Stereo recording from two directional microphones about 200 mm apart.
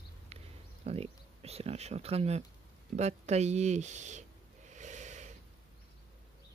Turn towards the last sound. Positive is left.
turn(degrees=-35)  # may be behind; listen again after turning